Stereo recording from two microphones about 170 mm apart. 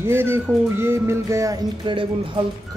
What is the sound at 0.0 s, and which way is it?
Music, 15° right (ahead or behind).